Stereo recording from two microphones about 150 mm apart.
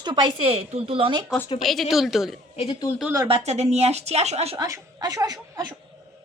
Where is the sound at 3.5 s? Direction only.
45° right (ahead or behind).